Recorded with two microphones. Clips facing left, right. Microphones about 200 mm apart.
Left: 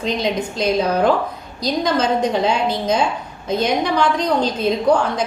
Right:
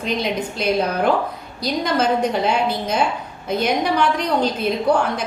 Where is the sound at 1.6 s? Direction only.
10° right (ahead or behind).